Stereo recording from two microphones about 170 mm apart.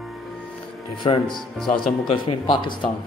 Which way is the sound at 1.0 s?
25° left (ahead or behind).